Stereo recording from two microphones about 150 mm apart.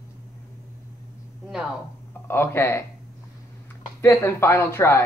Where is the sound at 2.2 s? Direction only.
15° left (ahead or behind).